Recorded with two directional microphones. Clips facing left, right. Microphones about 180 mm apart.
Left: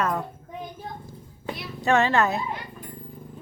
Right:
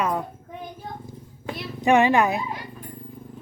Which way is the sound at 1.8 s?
15° right (ahead or behind).